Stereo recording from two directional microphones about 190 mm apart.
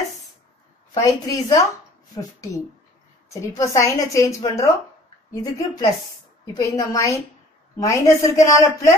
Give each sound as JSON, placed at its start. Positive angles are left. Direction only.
{"t": 0.9, "sound": "a woman's voice", "side_deg": 15}
{"t": 3.3, "sound": "a woman's voice", "side_deg": 15}